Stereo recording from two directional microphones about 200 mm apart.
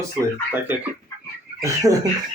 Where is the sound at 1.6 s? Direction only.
15° right (ahead or behind).